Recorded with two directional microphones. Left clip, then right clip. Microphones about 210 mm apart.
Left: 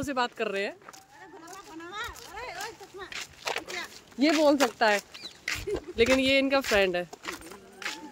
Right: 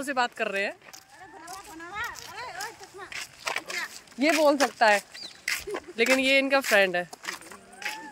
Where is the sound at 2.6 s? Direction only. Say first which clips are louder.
Right 1 dB; 5° right (ahead or behind).